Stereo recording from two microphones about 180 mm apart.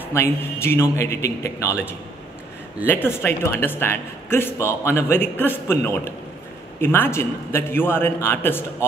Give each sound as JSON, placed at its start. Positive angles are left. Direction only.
{"t": 0.1, "sound": "a man's voice", "side_deg": 15}
{"t": 2.9, "sound": "a man's voice", "side_deg": 10}